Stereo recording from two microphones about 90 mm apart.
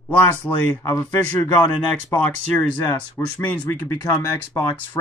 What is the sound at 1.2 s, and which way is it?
Speech, 20° left (ahead or behind).